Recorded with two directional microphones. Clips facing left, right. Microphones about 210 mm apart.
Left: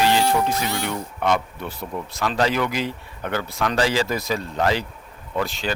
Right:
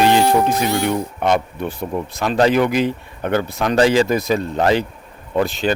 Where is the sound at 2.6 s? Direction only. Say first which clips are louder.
Right 8 dB; 55° right (ahead or behind).